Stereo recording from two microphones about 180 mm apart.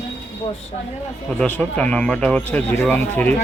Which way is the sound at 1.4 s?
5° left (ahead or behind).